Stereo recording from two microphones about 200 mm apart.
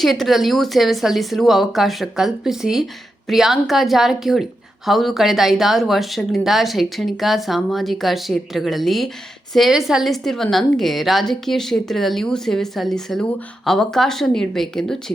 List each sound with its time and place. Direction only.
0.0 s speech: centre (ahead or behind)